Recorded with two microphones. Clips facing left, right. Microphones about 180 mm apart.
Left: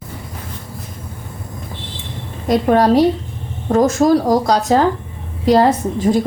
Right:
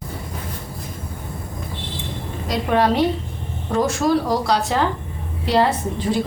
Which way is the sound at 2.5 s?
40° left (ahead or behind).